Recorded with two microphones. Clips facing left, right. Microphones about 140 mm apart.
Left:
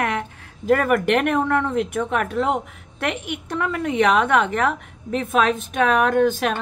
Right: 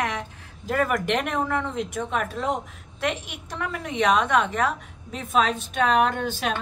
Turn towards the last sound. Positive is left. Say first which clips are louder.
# left 8 dB
turn(degrees=50)  # may be behind; listen again after turning